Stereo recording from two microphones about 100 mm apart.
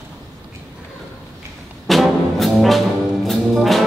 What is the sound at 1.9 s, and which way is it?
Music, centre (ahead or behind).